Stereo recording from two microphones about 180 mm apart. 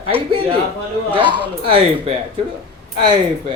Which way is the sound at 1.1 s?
25° right (ahead or behind).